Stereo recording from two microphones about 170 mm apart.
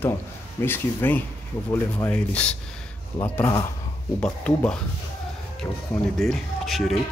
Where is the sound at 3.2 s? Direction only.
20° left (ahead or behind).